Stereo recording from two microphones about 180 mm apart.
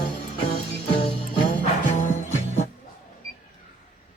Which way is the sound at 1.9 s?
45° left (ahead or behind).